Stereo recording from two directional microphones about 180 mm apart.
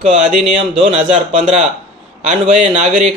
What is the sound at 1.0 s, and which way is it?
A man's voice, 45° right (ahead or behind).